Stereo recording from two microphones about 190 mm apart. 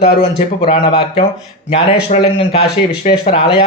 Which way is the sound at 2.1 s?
40° left (ahead or behind).